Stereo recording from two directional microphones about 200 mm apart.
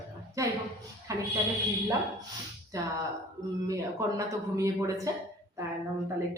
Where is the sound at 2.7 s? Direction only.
15° right (ahead or behind).